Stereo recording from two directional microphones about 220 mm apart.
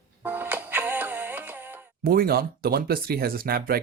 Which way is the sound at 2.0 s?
45° right (ahead or behind).